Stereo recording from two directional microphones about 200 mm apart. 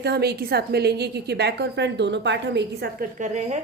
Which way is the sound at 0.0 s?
55° right (ahead or behind).